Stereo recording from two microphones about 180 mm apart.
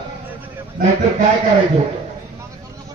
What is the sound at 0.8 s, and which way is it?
Speech, 50° right (ahead or behind).